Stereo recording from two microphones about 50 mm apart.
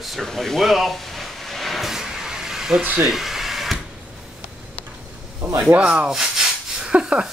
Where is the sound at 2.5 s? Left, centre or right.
Centre.